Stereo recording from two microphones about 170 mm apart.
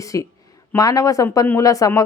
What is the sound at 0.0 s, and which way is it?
Speech, 20° left (ahead or behind).